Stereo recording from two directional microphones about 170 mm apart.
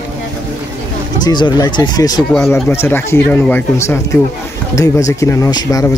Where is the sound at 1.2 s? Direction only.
25° left (ahead or behind).